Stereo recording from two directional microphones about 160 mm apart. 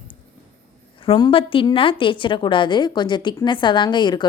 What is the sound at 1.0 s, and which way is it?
A woman's voice, 35° left (ahead or behind).